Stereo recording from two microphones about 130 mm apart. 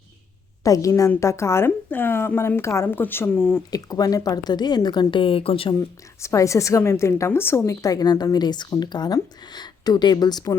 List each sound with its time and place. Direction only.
0.6 s a woman's voice: 25° left (ahead or behind)
3.7 s a woman's voice: 30° left (ahead or behind); by 5.7 s 45° left (ahead or behind)
6.2 s a woman's voice: 25° left (ahead or behind)